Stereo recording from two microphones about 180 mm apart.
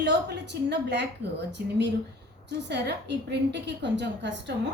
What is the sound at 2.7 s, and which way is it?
A woman's voice, 70° right (ahead or behind).